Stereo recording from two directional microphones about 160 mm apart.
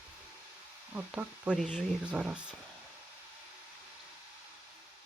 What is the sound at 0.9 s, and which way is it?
Speech, 10° right (ahead or behind).